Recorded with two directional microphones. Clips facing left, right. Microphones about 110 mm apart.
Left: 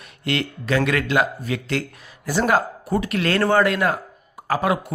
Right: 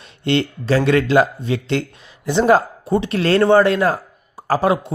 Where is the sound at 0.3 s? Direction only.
30° right (ahead or behind).